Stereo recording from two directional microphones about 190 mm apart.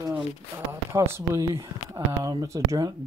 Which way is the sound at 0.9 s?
15° right (ahead or behind).